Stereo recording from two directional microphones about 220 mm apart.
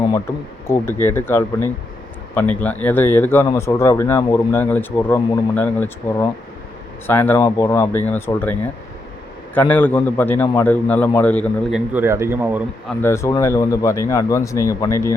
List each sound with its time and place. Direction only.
0.7 s speech: 10° left (ahead or behind)
9.6 s speech: 10° left (ahead or behind)
11.9 s a man's voice: 10° right (ahead or behind)
13.0 s speech: 10° left (ahead or behind)